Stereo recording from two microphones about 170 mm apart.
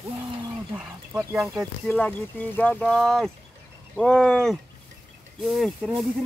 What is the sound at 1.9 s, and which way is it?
Speech, 10° left (ahead or behind).